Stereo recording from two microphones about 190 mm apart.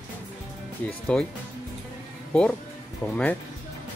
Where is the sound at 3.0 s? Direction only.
5° left (ahead or behind).